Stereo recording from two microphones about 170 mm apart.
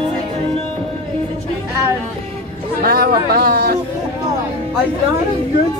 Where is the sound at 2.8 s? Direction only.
65° right (ahead or behind).